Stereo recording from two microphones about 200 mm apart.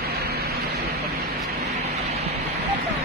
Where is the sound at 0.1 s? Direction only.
50° right (ahead or behind).